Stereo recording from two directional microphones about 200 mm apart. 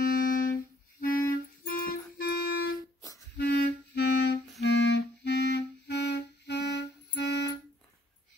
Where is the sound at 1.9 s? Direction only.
50° left (ahead or behind).